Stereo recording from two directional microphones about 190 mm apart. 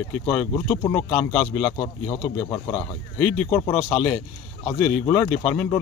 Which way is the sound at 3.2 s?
5° left (ahead or behind).